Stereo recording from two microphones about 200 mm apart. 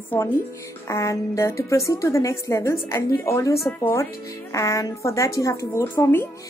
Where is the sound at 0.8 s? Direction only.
15° left (ahead or behind).